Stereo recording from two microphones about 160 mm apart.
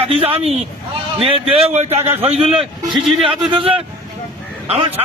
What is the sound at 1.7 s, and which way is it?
A man's voice, 40° right (ahead or behind).